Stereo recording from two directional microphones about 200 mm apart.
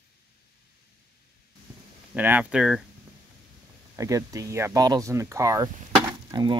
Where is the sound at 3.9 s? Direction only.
15° right (ahead or behind).